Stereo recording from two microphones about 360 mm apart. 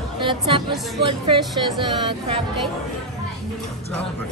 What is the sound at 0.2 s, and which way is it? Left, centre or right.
A woman's voice, centre.